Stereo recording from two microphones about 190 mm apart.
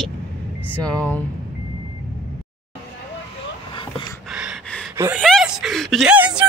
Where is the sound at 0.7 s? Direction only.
5° left (ahead or behind).